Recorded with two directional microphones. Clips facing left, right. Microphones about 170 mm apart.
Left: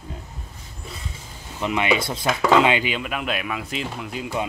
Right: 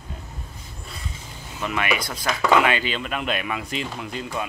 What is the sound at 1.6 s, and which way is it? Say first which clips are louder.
Speech: left 4 dB; 20° left (ahead or behind).